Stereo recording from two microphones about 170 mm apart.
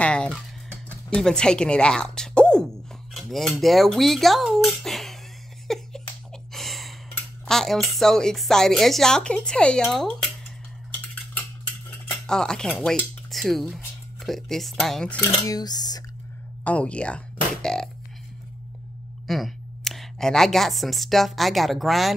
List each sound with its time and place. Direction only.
0.0 s speech: 5° left (ahead or behind)
3.2 s cutlery: centre (ahead or behind)
5.7 s a sound: centre (ahead or behind)
6.5 s gasp: centre (ahead or behind)
7.2 s speech: 5° left (ahead or behind)
12.1 s speech: 5° left (ahead or behind)
15.1 s dishes: 20° left (ahead or behind)
16.6 s speech: 5° left (ahead or behind)
19.2 s speech: centre (ahead or behind)